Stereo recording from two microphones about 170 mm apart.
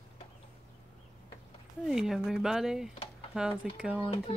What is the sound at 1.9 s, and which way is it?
Speech, centre (ahead or behind).